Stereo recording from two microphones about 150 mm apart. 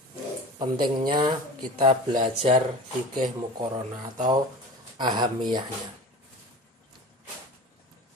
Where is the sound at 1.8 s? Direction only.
35° right (ahead or behind).